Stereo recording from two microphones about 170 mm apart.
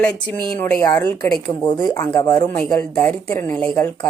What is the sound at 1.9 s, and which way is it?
A woman's voice, 10° left (ahead or behind).